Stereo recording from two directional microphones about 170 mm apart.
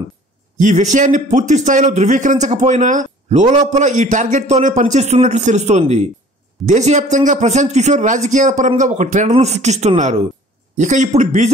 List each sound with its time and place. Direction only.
0.6 s a man's voice: 45° right (ahead or behind)